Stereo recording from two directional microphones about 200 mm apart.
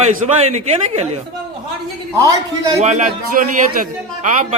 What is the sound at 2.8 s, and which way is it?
A man's voice, 35° right (ahead or behind).